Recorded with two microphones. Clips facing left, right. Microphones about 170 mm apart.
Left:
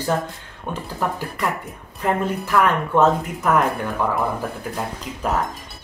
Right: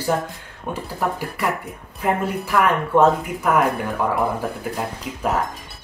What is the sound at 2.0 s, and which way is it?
Speech, 10° right (ahead or behind).